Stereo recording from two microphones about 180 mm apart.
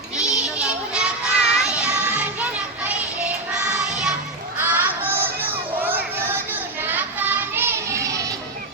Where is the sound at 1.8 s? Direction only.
5° right (ahead or behind).